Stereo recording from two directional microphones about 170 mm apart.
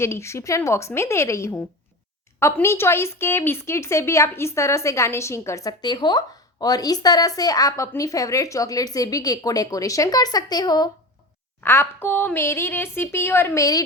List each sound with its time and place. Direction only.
0.0 s a woman's voice: 15° left (ahead or behind)